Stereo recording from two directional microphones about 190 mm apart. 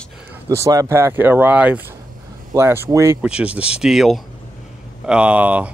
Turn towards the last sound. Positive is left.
turn(degrees=-5)  # may be behind; listen again after turning